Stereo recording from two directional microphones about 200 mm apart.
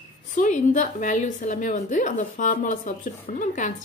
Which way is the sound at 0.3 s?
40° left (ahead or behind).